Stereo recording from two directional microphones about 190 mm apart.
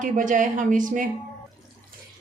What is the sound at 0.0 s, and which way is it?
A woman's voice, 45° right (ahead or behind).